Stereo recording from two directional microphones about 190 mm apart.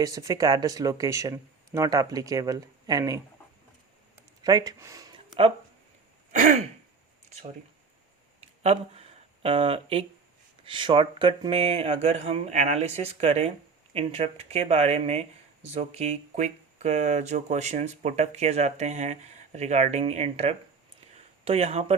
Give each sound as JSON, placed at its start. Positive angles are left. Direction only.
{"t": 0.0, "sound": "speech", "side_deg": -15}
{"t": 4.1, "sound": "a sound", "side_deg": -20}
{"t": 6.3, "sound": "throat clearing", "side_deg": -40}
{"t": 8.6, "sound": "speech", "side_deg": -35}